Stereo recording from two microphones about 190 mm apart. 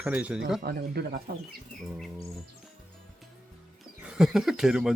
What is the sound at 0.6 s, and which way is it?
Speech, 55° right (ahead or behind).